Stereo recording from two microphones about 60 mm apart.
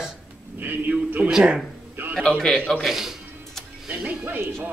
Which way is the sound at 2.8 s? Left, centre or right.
Centre.